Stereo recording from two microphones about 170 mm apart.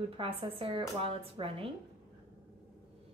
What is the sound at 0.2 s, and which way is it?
Speech, 30° right (ahead or behind).